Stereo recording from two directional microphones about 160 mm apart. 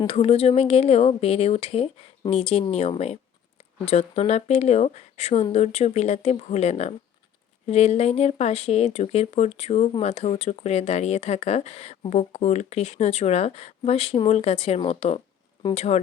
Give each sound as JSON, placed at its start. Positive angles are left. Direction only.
{"t": 0.1, "sound": "speech", "side_deg": 40}